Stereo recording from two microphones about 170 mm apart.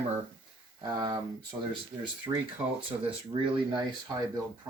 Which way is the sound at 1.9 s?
Centre (ahead or behind).